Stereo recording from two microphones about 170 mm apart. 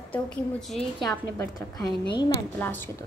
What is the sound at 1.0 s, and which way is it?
A woman's voice, 20° left (ahead or behind).